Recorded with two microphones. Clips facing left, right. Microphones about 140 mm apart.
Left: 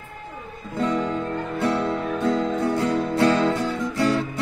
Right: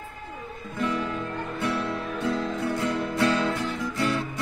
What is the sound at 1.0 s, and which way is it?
Music, 25° left (ahead or behind).